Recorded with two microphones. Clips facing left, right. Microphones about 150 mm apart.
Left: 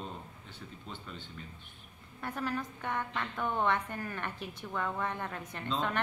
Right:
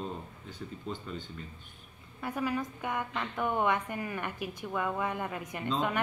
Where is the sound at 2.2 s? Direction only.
10° right (ahead or behind).